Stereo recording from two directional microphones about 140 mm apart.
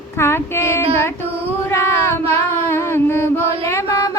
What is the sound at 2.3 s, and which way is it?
Mantra, 15° left (ahead or behind).